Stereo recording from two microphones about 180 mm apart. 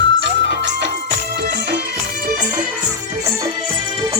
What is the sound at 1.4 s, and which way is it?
Music, 60° right (ahead or behind).